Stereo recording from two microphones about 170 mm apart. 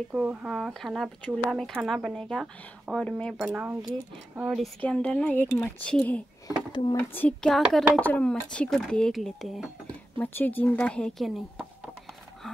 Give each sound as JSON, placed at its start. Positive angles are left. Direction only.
{"t": 0.1, "sound": "speech", "side_deg": -5}
{"t": 3.4, "sound": "speech", "side_deg": -10}
{"t": 4.8, "sound": "speech", "side_deg": 5}
{"t": 6.4, "sound": "speech", "side_deg": 25}
{"t": 7.0, "sound": "speech", "side_deg": 10}